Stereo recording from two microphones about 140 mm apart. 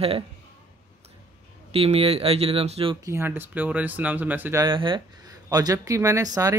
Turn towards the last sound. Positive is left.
turn(degrees=-25)  # may be behind; listen again after turning